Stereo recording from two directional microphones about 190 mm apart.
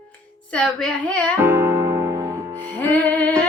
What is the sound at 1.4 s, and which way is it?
Music, 10° right (ahead or behind).